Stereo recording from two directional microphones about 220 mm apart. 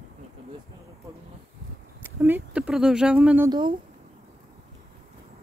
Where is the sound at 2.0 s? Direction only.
10° right (ahead or behind).